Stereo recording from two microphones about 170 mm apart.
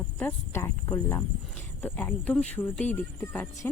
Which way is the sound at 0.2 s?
10° left (ahead or behind).